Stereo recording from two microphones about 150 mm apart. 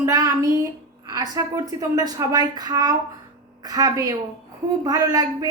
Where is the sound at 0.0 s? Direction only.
20° right (ahead or behind).